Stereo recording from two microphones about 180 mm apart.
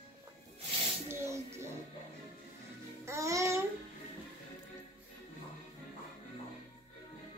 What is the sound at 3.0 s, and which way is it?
Music, 15° right (ahead or behind).